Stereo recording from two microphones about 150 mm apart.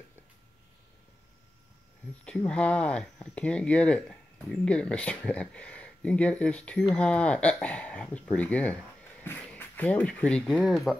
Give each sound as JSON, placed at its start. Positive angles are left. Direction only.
{"t": 2.2, "sound": "speech", "side_deg": 5}